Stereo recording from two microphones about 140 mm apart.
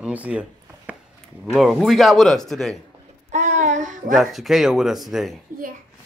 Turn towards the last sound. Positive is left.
turn(degrees=-15)  # may be behind; listen again after turning